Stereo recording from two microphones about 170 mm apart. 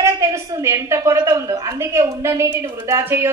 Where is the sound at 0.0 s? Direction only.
15° right (ahead or behind).